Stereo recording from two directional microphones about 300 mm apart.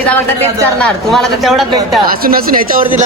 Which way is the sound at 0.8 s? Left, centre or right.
Centre.